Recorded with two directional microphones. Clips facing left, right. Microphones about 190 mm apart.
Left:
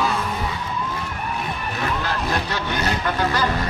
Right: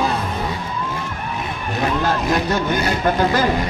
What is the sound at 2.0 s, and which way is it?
Vehicle, 45° right (ahead or behind).